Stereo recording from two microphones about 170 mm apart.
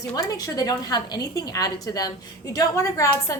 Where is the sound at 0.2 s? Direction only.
20° left (ahead or behind).